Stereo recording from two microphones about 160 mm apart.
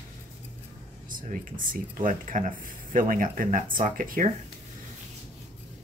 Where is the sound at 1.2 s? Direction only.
60° right (ahead or behind).